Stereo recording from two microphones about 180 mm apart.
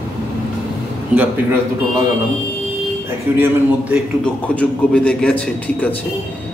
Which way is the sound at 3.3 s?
10° right (ahead or behind).